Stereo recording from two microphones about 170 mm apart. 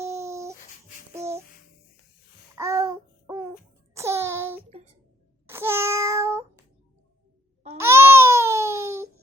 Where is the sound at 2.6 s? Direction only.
20° right (ahead or behind).